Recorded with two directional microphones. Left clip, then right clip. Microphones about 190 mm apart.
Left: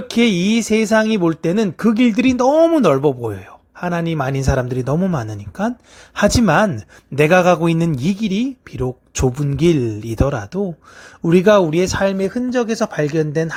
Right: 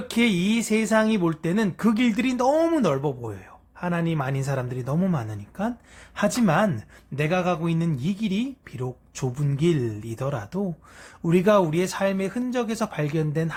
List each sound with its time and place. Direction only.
0.1 s speech: 35° left (ahead or behind)
7.2 s speech: 50° left (ahead or behind); by 13.6 s 35° left (ahead or behind)